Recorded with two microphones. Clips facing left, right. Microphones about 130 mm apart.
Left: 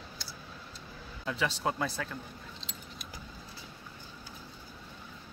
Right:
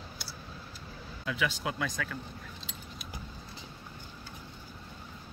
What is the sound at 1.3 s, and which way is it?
Speech, 35° left (ahead or behind).